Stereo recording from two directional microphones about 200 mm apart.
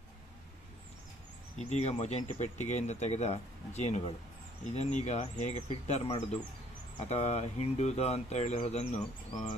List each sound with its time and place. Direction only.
1.6 s speech: 35° left (ahead or behind)